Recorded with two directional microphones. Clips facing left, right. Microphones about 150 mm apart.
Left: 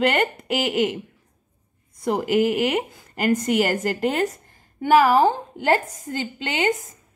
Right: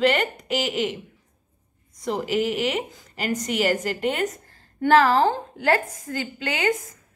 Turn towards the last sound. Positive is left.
turn(degrees=20)  # may be behind; listen again after turning